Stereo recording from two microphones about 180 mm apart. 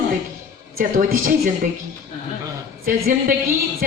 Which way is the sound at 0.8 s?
50° right (ahead or behind).